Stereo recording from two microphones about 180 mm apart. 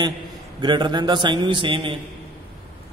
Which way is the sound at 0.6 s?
25° right (ahead or behind).